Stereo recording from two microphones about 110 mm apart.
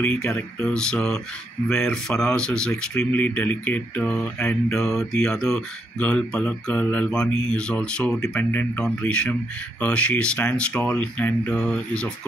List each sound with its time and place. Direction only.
0.0 s speech: 10° left (ahead or behind)